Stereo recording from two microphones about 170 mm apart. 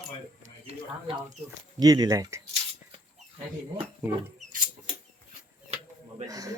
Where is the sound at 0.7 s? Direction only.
30° right (ahead or behind).